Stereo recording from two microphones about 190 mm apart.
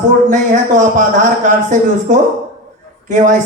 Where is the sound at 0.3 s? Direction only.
40° right (ahead or behind).